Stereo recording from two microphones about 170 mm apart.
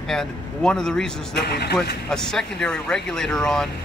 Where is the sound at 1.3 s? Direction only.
70° left (ahead or behind).